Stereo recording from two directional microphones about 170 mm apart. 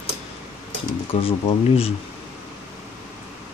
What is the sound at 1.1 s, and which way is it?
Speech, 40° left (ahead or behind).